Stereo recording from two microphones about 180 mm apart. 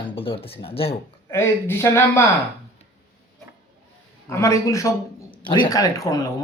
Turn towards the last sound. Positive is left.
turn(degrees=20)  # may be behind; listen again after turning